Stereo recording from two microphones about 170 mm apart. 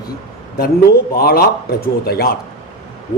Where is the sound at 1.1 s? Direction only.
65° left (ahead or behind).